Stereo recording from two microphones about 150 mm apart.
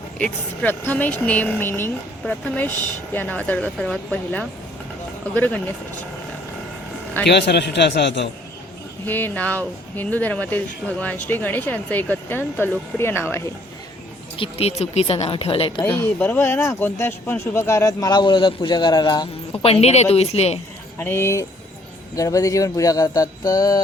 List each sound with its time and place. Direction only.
0.2 s speech: 10° left (ahead or behind)
9.0 s speech: 15° left (ahead or behind)
14.3 s speech: 40° left (ahead or behind)
15.8 s speech: 15° left (ahead or behind)
19.6 s speech: 45° left (ahead or behind)
21.0 s speech: 15° left (ahead or behind)